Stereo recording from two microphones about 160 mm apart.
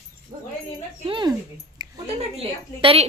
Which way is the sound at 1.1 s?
30° right (ahead or behind).